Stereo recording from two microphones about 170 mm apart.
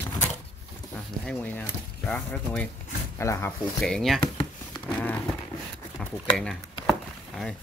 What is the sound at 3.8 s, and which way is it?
Speech, centre (ahead or behind).